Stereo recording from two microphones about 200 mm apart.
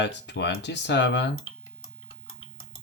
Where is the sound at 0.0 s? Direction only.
60° left (ahead or behind).